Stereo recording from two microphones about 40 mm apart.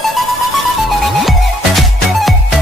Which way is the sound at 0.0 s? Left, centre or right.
Centre.